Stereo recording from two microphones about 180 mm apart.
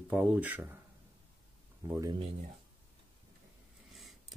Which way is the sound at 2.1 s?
35° right (ahead or behind).